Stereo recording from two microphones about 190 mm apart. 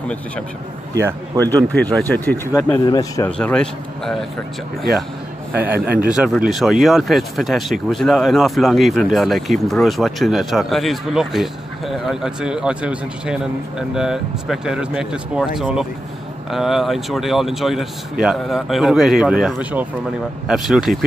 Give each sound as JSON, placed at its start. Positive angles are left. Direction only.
{"t": 0.9, "sound": "a man's voice", "side_deg": -15}
{"t": 1.4, "sound": "speech", "side_deg": 10}
{"t": 3.3, "sound": "speech", "side_deg": 5}
{"t": 5.9, "sound": "speech", "side_deg": -5}